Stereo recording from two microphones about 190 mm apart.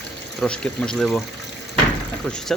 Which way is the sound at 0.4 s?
5° left (ahead or behind).